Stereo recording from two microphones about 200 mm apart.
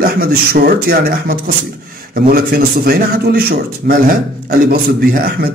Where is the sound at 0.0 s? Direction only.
50° right (ahead or behind).